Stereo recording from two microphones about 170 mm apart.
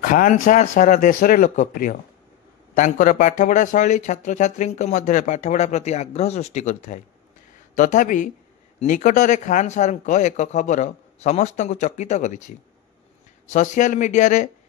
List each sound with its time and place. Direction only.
0.0 s speech: 50° left (ahead or behind)